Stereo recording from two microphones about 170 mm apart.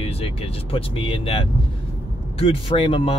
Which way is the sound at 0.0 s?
35° left (ahead or behind).